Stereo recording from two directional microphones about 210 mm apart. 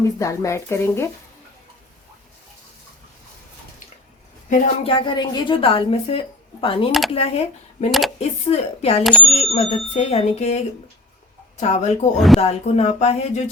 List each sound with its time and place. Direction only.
0.2 s speech: 15° left (ahead or behind)
4.4 s a woman's voice: 35° left (ahead or behind)
4.9 s a woman's voice: 25° left (ahead or behind)
7.9 s speech: centre (ahead or behind)
8.2 s a woman's voice: 30° left (ahead or behind)
11.6 s speech: 30° left (ahead or behind)
12.1 s speech: centre (ahead or behind)
12.4 s speech: 30° left (ahead or behind)